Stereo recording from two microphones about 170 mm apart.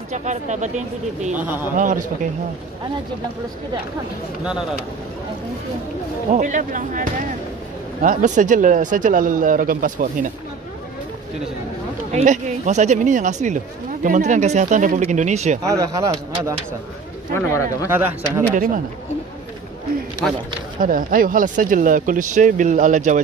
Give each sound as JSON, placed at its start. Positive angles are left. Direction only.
{"t": 0.1, "sound": "speech", "side_deg": -45}
{"t": 1.4, "sound": "speech", "side_deg": -10}
{"t": 1.8, "sound": "speech", "side_deg": -50}
{"t": 6.3, "sound": "speech", "side_deg": -50}
{"t": 12.1, "sound": "speech", "side_deg": -40}
{"t": 15.6, "sound": "speech", "side_deg": -20}
{"t": 17.3, "sound": "speech", "side_deg": 15}
{"t": 17.8, "sound": "speech", "side_deg": -15}
{"t": 18.5, "sound": "speech", "side_deg": -50}
{"t": 20.8, "sound": "speech", "side_deg": -55}